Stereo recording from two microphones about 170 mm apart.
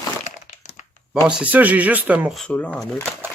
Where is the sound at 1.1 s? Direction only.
5° right (ahead or behind).